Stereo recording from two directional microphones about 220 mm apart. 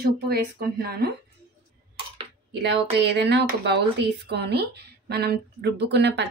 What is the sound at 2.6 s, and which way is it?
Speech, 50° right (ahead or behind).